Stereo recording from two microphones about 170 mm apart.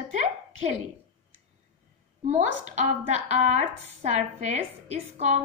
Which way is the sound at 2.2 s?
45° right (ahead or behind).